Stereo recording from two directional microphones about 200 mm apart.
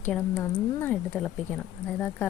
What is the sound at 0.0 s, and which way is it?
Speech, 5° left (ahead or behind).